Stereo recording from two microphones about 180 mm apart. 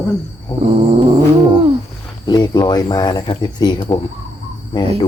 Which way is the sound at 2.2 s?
25° left (ahead or behind).